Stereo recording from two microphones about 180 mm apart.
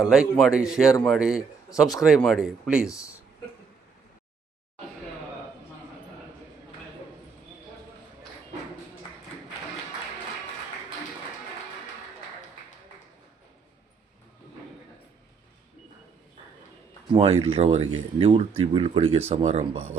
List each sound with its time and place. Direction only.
0.0 s speech: 5° right (ahead or behind)
17.1 s speech: 30° right (ahead or behind)